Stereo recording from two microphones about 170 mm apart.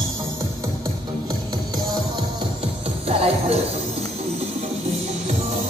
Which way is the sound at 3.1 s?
35° right (ahead or behind).